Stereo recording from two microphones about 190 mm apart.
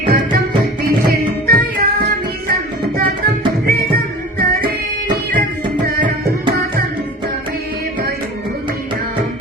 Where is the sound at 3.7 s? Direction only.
50° right (ahead or behind).